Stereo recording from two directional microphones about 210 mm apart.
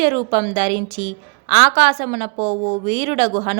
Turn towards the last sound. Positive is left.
turn(degrees=-30)  # may be behind; listen again after turning